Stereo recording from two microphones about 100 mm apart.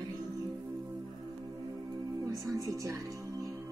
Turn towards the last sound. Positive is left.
turn(degrees=-35)  # may be behind; listen again after turning